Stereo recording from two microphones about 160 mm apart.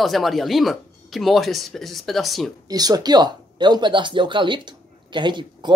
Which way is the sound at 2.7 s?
25° right (ahead or behind).